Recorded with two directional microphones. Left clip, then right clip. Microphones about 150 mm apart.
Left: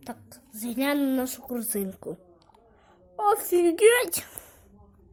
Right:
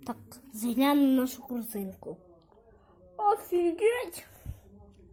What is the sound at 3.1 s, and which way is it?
A woman's voice, 55° left (ahead or behind).